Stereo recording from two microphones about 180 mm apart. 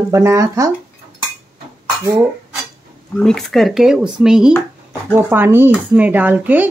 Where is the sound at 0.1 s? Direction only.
15° right (ahead or behind).